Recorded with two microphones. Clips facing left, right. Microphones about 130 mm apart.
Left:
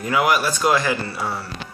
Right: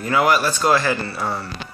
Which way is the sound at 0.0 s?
10° left (ahead or behind).